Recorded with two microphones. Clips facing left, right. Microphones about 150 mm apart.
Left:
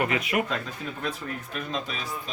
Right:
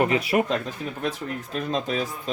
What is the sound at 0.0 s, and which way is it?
Speech, 35° right (ahead or behind).